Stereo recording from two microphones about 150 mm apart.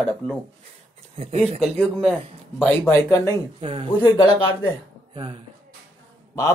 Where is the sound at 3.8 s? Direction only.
30° left (ahead or behind).